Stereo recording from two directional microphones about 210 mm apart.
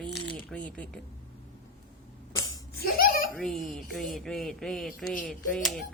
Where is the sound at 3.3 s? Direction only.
Centre (ahead or behind).